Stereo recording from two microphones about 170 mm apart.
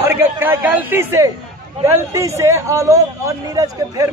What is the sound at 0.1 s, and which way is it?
A man's voice, 15° right (ahead or behind).